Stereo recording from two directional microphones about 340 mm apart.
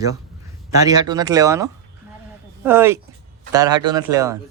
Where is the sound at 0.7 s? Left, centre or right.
Centre.